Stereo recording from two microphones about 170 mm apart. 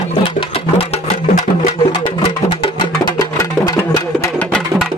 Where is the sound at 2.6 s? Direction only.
25° left (ahead or behind).